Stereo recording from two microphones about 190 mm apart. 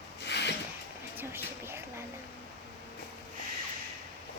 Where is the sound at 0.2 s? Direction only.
65° left (ahead or behind).